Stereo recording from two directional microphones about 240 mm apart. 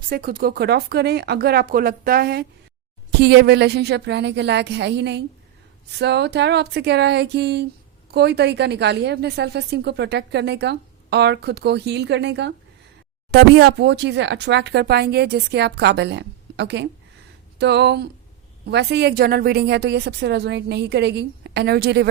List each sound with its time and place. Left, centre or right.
0.1 s a woman's voice: right